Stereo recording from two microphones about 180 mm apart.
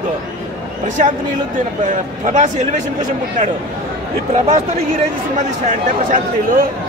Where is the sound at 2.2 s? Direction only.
40° right (ahead or behind).